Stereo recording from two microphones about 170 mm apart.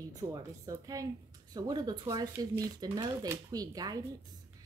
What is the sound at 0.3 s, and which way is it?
Speech, 20° right (ahead or behind).